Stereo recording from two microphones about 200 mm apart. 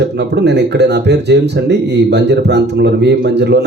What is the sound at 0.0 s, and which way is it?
Speech, 60° right (ahead or behind).